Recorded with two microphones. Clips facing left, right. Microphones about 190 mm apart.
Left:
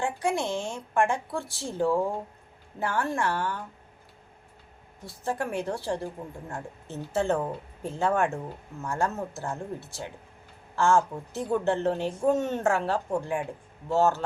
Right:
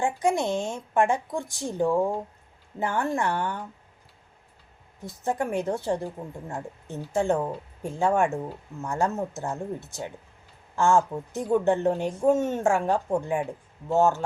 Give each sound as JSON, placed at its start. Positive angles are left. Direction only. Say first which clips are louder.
{"t": 0.0, "sound": "a woman's voice", "louder": "right 3 dB", "side_deg": -20}
{"t": 5.0, "sound": "a woman's voice", "louder": "right 3 dB", "side_deg": -20}